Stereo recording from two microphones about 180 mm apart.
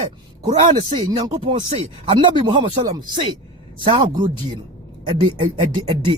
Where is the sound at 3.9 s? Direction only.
30° right (ahead or behind).